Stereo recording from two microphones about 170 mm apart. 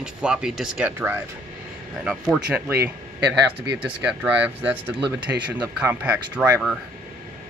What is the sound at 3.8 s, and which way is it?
Speech, 10° right (ahead or behind).